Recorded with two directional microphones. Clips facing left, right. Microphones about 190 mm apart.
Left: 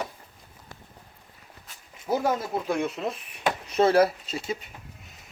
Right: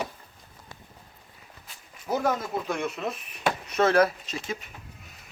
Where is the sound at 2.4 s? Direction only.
30° left (ahead or behind).